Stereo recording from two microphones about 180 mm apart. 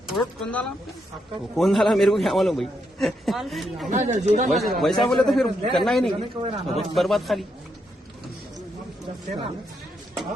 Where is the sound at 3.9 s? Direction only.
40° right (ahead or behind).